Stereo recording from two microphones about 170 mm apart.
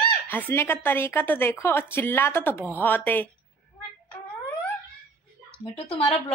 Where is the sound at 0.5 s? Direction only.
15° left (ahead or behind).